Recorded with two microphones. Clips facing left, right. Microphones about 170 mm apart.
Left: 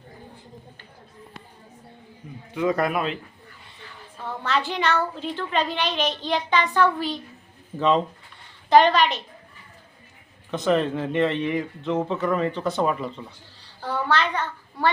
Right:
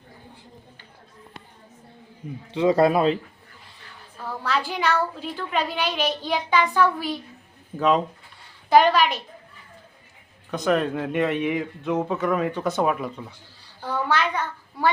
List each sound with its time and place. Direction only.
2.5 s a man's voice: 30° right (ahead or behind)
4.2 s a woman's voice: 5° right (ahead or behind)
10.5 s a woman's voice: centre (ahead or behind)